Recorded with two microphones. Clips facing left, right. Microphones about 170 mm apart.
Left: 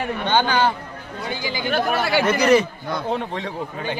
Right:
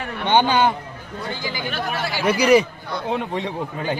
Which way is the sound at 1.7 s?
55° left (ahead or behind).